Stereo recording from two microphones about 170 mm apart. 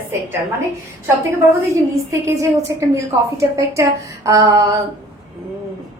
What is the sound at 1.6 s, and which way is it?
A woman's voice, 15° right (ahead or behind).